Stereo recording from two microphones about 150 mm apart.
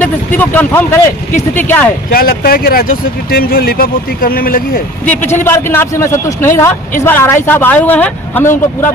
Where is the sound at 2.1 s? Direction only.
80° left.